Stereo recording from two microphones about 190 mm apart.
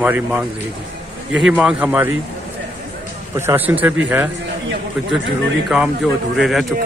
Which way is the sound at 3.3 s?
15° right (ahead or behind).